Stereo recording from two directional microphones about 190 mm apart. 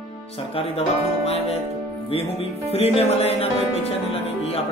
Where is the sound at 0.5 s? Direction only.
30° left (ahead or behind).